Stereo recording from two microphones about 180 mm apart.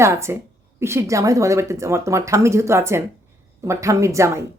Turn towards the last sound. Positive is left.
turn(degrees=-15)  # may be behind; listen again after turning